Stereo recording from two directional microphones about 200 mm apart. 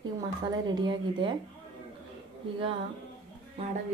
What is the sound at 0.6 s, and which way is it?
Speech, 20° right (ahead or behind).